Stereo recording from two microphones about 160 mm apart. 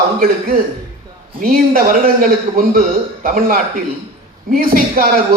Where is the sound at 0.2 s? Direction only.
60° right (ahead or behind).